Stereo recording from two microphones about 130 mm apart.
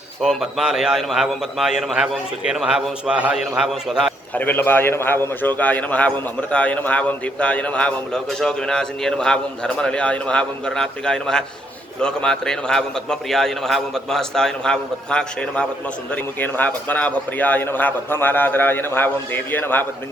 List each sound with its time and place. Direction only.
0.2 s a man's voice: centre (ahead or behind)
4.4 s a man's voice: 15° left (ahead or behind)